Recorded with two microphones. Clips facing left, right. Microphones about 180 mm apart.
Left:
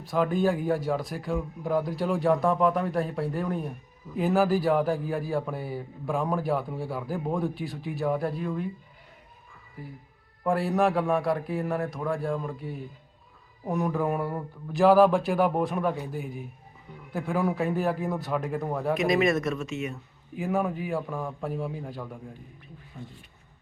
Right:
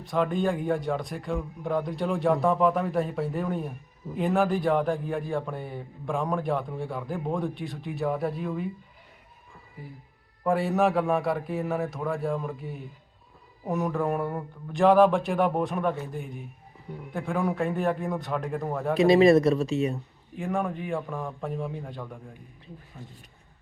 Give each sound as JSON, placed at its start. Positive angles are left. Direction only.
{"t": 0.0, "sound": "a man's voice", "side_deg": 0}
{"t": 9.8, "sound": "a man's voice", "side_deg": 0}
{"t": 18.9, "sound": "speech", "side_deg": -30}
{"t": 20.3, "sound": "a man's voice", "side_deg": 5}